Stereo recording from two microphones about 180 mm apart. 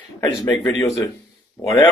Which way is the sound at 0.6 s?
20° left (ahead or behind).